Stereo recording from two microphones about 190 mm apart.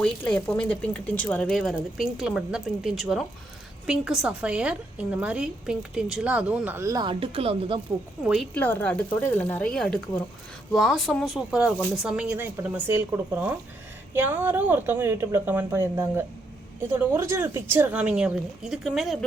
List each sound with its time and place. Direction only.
0.0 s a woman's voice: 5° left (ahead or behind); by 7.8 s 30° right (ahead or behind)
8.2 s speech: centre (ahead or behind)
8.5 s a woman's voice: 10° left (ahead or behind)